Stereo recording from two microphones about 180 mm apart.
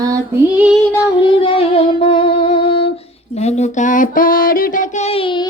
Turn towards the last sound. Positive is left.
turn(degrees=30)  # may be behind; listen again after turning